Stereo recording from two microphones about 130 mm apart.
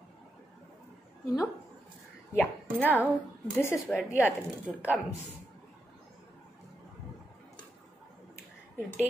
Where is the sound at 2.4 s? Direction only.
15° left (ahead or behind).